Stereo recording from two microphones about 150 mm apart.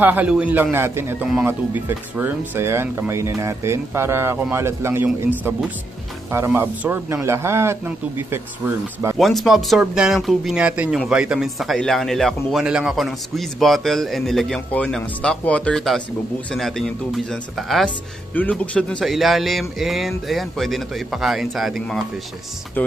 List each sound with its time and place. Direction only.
0.0 s speech: 10° right (ahead or behind)
9.2 s speech: centre (ahead or behind)
22.8 s speech: 10° left (ahead or behind)